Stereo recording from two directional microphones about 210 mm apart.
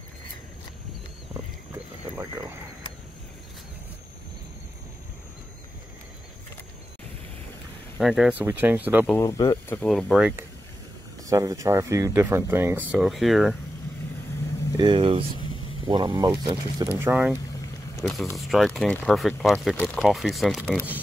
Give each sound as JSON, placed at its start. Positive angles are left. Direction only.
{"t": 2.1, "sound": "a sound", "side_deg": -15}
{"t": 8.0, "sound": "speech", "side_deg": -5}
{"t": 9.0, "sound": "speech", "side_deg": 10}
{"t": 11.2, "sound": "speech", "side_deg": -15}
{"t": 14.8, "sound": "speech", "side_deg": -25}